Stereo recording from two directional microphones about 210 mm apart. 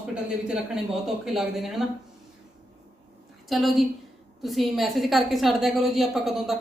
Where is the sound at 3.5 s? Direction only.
Centre (ahead or behind).